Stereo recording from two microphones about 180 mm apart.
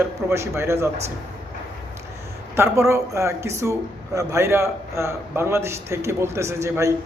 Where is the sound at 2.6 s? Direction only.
15° right (ahead or behind).